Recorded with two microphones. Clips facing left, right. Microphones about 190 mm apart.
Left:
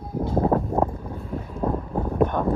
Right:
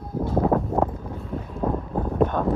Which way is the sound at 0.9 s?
Centre (ahead or behind).